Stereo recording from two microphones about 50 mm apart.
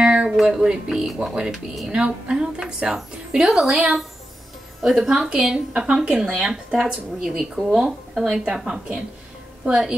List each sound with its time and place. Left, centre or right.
0.0 s music: right
0.4 s music: centre
0.8 s a woman's voice: centre
4.8 s a woman's voice: centre
7.2 s a woman's voice: centre
9.6 s a woman's voice: right